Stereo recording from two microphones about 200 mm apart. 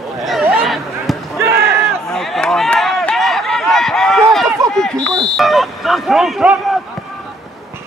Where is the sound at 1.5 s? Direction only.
50° right (ahead or behind).